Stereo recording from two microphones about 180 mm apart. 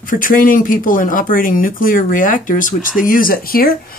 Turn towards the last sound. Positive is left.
turn(degrees=55)  # may be behind; listen again after turning